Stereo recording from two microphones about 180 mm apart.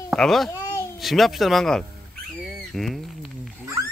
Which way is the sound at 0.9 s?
Centre (ahead or behind).